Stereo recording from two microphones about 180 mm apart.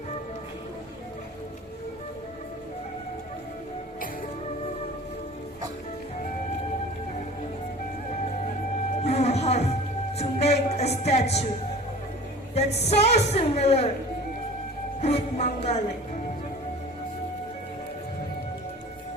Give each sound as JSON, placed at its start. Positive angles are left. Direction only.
{"t": 9.0, "sound": "music", "side_deg": 35}
{"t": 12.5, "sound": "a woman's voice", "side_deg": 35}
{"t": 15.0, "sound": "a woman's voice", "side_deg": 35}